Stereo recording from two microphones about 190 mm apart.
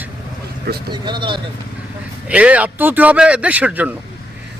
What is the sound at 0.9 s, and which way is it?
Speech, 25° right (ahead or behind).